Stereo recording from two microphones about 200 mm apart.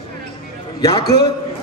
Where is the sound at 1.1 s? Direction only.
55° left (ahead or behind).